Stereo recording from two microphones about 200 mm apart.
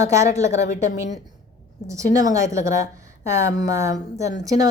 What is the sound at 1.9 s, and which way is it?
A woman's voice, 15° right (ahead or behind).